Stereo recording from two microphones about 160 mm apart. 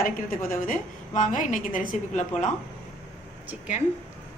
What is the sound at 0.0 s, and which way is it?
A woman's voice, 60° left (ahead or behind).